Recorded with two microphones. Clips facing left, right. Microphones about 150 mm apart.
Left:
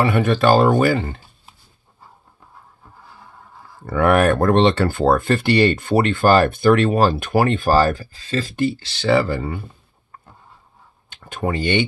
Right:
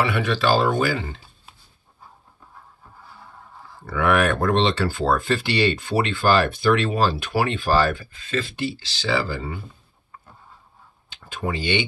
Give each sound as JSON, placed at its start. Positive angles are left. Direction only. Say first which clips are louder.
{"t": 0.0, "sound": "speech", "louder": "left 5 dB", "side_deg": 45}
{"t": 3.8, "sound": "speech", "louder": "left 5 dB", "side_deg": 45}
{"t": 11.1, "sound": "speech", "louder": "left 4 dB", "side_deg": 50}